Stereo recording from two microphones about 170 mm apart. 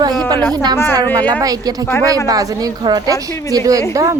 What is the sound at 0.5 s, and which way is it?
A woman's voice, 20° right (ahead or behind).